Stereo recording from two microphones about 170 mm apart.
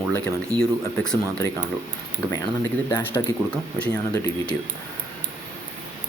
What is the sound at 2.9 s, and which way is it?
Speech, 10° left (ahead or behind).